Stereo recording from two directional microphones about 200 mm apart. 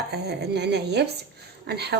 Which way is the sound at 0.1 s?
55° right (ahead or behind).